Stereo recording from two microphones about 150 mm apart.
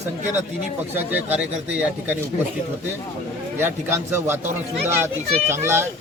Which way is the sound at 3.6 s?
15° right (ahead or behind).